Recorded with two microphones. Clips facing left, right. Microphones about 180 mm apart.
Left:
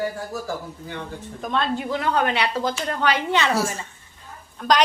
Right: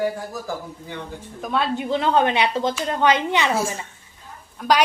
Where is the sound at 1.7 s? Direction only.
25° right (ahead or behind).